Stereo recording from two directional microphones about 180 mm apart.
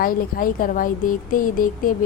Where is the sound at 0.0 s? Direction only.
50° left (ahead or behind).